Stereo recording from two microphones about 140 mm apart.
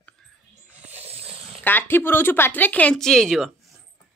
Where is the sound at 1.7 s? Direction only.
15° left (ahead or behind).